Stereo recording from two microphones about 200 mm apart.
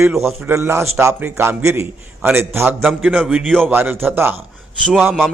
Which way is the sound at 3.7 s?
10° right (ahead or behind).